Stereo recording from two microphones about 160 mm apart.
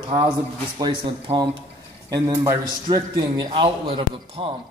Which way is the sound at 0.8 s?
25° right (ahead or behind).